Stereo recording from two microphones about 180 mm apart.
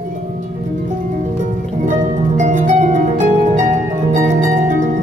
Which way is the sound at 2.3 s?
45° right (ahead or behind).